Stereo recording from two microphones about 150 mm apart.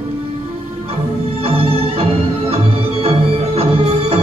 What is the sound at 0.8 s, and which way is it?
Music, 40° right (ahead or behind).